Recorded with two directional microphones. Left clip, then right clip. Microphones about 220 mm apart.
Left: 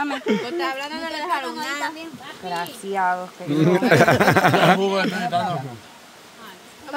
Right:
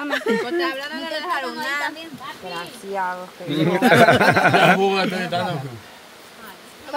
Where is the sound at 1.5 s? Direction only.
20° left (ahead or behind).